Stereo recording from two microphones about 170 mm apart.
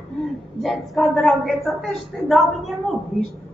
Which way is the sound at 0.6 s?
Centre (ahead or behind).